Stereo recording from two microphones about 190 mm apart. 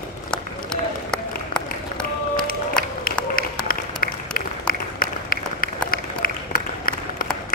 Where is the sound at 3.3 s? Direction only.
50° left (ahead or behind).